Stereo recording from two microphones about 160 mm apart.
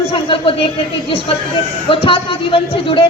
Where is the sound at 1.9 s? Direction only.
35° left (ahead or behind).